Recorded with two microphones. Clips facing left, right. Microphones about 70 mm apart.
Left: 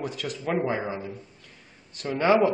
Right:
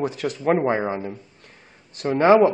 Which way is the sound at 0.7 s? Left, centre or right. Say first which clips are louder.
Right 6 dB; right.